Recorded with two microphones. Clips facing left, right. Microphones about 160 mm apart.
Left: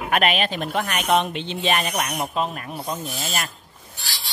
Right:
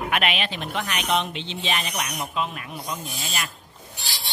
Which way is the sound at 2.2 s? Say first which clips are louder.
Left 3 dB; 40° left (ahead or behind).